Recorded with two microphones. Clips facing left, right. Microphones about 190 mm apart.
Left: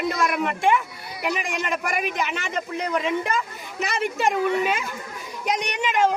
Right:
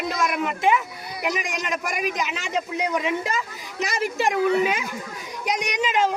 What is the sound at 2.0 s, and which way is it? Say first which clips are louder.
Speech: even; 55° left (ahead or behind).